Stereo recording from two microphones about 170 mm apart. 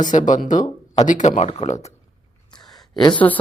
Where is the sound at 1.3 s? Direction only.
35° left (ahead or behind).